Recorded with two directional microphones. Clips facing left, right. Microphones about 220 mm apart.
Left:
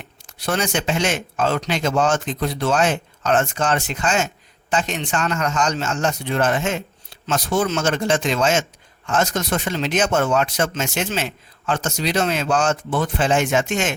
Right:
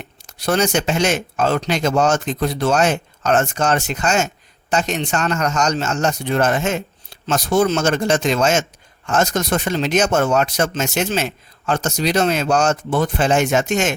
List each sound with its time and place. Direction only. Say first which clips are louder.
0.3 s speech: right 5 dB; 40° right (ahead or behind)